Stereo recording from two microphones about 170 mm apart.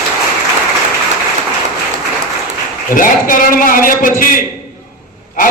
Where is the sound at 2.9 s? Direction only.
55° left (ahead or behind).